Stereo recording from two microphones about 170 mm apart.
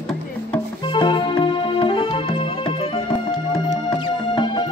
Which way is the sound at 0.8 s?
30° left (ahead or behind).